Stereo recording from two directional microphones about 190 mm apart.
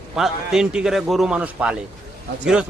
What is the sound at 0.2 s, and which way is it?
A man's voice, 5° right (ahead or behind).